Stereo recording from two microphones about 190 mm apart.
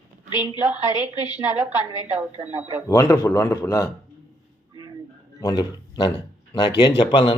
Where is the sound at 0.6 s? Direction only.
5° right (ahead or behind).